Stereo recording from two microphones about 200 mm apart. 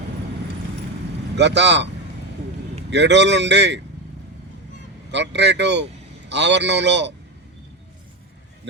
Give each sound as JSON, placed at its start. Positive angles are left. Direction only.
{"t": 1.4, "sound": "a man's voice", "side_deg": -60}
{"t": 2.9, "sound": "a man's voice", "side_deg": -60}
{"t": 5.1, "sound": "a man's voice", "side_deg": -60}